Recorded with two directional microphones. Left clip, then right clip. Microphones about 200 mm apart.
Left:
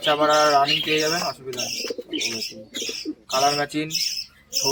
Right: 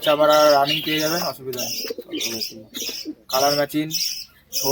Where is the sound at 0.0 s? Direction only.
30° right (ahead or behind).